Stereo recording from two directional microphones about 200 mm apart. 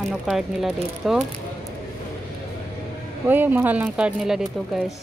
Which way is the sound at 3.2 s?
10° right (ahead or behind).